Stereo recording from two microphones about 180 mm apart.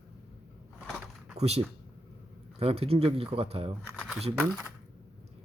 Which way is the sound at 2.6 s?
35° right (ahead or behind).